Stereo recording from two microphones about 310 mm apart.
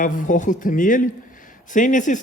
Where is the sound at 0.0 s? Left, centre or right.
Left.